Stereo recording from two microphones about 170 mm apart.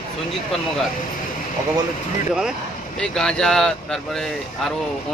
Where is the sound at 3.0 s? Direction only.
5° left (ahead or behind).